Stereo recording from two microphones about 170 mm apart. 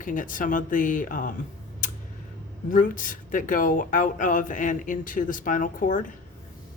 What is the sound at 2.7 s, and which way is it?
Speech, 50° left (ahead or behind).